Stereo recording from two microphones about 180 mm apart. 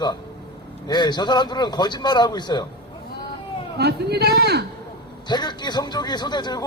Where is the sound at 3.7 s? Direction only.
65° right (ahead or behind).